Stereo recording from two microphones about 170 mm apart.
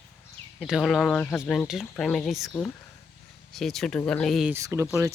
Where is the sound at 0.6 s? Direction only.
Centre (ahead or behind).